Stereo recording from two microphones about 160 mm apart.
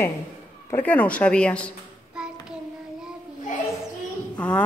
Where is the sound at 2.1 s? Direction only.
5° right (ahead or behind).